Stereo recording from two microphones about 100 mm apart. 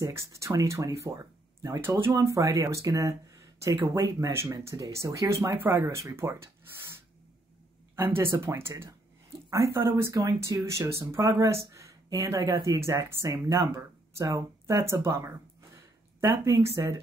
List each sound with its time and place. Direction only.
0.0 s speech: 30° right (ahead or behind)
16.4 s speech: 35° right (ahead or behind)